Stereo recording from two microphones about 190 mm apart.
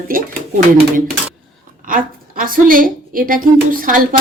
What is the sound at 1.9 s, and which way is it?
A woman's voice, 45° right (ahead or behind).